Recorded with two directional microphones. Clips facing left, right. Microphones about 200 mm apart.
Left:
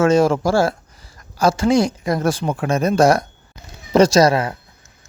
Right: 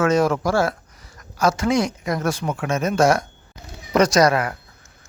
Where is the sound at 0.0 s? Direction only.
30° left (ahead or behind).